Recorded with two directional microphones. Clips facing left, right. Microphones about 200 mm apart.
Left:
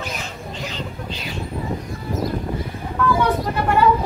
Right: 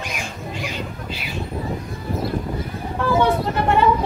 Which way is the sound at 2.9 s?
25° right (ahead or behind).